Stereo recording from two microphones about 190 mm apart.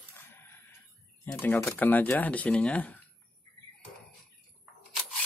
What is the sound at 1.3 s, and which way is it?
Speech, 10° left (ahead or behind).